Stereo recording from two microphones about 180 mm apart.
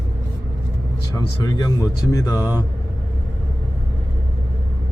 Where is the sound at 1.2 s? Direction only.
20° left (ahead or behind).